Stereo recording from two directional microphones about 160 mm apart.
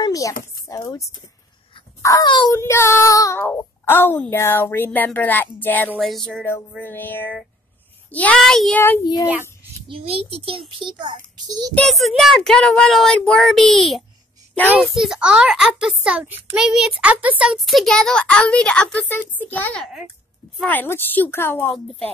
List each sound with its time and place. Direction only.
0.0 s a sound: 20° left (ahead or behind)
0.7 s a child's voice: 20° left (ahead or behind)
2.5 s a child's voice: 15° left (ahead or behind)
9.8 s a child's voice: 35° right (ahead or behind)
11.7 s a child's voice: centre (ahead or behind)